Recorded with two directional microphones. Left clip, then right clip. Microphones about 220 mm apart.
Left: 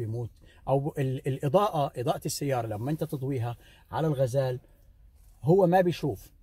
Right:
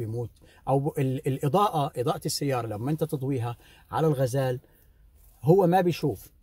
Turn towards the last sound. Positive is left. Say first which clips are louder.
# even
turn(degrees=-20)  # may be behind; listen again after turning